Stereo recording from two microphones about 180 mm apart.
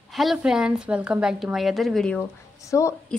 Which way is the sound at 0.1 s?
Centre (ahead or behind).